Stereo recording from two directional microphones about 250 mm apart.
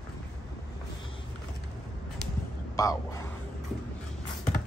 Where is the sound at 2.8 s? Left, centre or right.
Centre.